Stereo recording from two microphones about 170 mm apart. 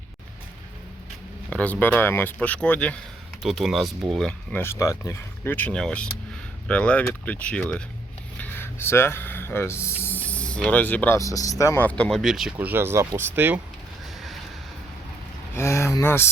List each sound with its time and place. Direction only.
1.5 s speech: 10° left (ahead or behind); by 13.6 s 10° right (ahead or behind)
15.5 s speech: 15° left (ahead or behind)